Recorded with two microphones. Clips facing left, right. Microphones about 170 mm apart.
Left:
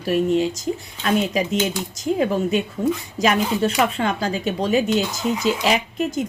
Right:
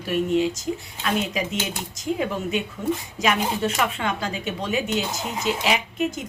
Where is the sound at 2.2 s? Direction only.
35° left (ahead or behind).